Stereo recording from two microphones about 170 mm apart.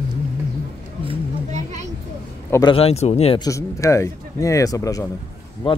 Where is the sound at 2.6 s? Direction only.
35° left (ahead or behind).